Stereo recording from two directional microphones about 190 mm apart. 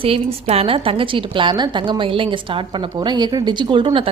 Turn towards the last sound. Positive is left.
turn(degrees=-25)  # may be behind; listen again after turning